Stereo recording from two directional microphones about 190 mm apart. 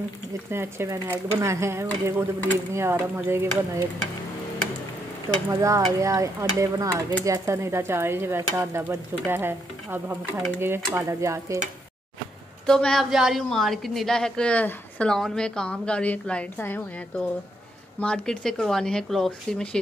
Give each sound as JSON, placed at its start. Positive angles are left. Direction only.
{"t": 0.5, "sound": "stir", "side_deg": -10}
{"t": 5.5, "sound": "stir", "side_deg": -15}
{"t": 12.6, "sound": "a woman's voice", "side_deg": 5}